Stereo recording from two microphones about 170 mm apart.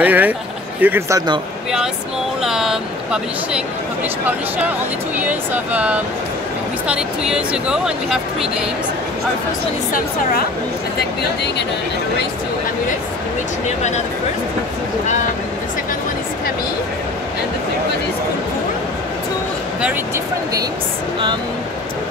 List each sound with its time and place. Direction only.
0.0 s speech: 10° right (ahead or behind)
2.4 s speech: centre (ahead or behind)
11.0 s speech: 80° left